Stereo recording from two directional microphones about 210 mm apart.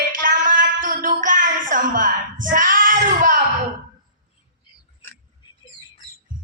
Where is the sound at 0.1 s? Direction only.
40° right (ahead or behind).